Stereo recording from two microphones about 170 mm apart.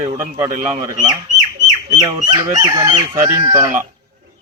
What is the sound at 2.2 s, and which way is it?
Chicken, 25° right (ahead or behind).